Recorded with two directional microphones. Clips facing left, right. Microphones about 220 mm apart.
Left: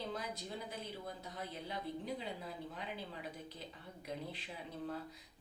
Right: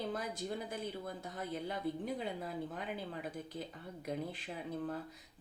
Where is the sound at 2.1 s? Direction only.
50° right (ahead or behind).